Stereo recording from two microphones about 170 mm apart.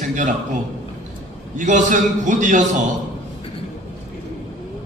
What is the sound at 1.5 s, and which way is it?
A man's voice, 45° right (ahead or behind).